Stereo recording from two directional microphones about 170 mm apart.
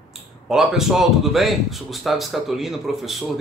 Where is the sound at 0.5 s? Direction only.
Centre (ahead or behind).